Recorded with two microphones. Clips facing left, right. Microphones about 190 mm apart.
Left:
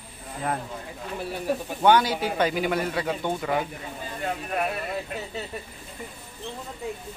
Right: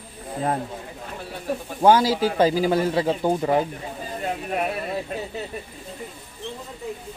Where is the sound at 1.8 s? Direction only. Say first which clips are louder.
Right 4 dB; 30° right (ahead or behind).